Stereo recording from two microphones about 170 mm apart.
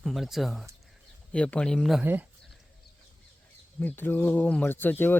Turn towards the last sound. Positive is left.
turn(degrees=10)  # may be behind; listen again after turning